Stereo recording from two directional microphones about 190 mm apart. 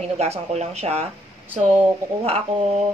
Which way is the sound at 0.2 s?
35° right (ahead or behind).